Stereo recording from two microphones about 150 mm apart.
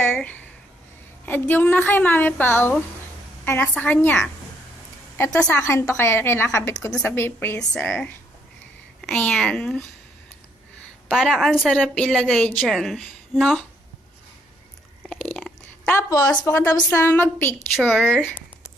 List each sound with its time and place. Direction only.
0.0 s a sound: 10° left (ahead or behind)
1.2 s a woman's voice: 10° left (ahead or behind)
5.3 s a woman's voice: 5° left (ahead or behind)
5.6 s a woman's voice: 20° left (ahead or behind)
11.1 s a woman's voice: 5° right (ahead or behind)
15.1 s chewing: 10° left (ahead or behind)
15.9 s a woman's voice: 20° left (ahead or behind)
17.7 s a woman's voice: centre (ahead or behind)